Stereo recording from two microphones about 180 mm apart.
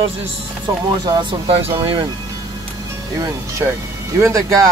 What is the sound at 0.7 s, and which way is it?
Speech, 25° right (ahead or behind).